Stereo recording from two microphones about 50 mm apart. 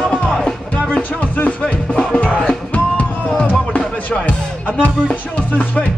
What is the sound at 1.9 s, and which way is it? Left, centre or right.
Music, left.